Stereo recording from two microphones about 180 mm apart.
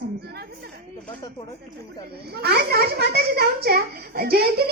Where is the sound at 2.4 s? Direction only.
60° right (ahead or behind).